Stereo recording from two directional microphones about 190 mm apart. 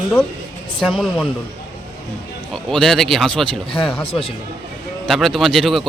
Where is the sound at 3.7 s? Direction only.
30° left (ahead or behind).